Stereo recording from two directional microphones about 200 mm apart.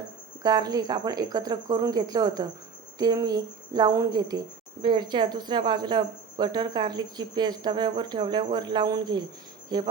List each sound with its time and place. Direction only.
0.4 s speech: 20° right (ahead or behind)
9.6 s cricket: 20° right (ahead or behind)